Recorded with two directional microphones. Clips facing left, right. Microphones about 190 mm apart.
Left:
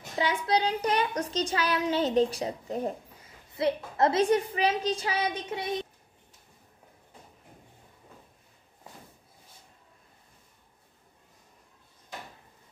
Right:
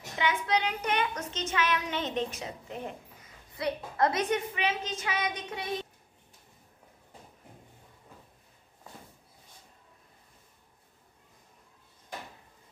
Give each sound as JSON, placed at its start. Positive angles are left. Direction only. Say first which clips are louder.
{"t": 0.2, "sound": "a child's voice", "louder": "left 2 dB", "side_deg": 35}
{"t": 3.5, "sound": "a child's voice", "louder": "left 4 dB", "side_deg": 25}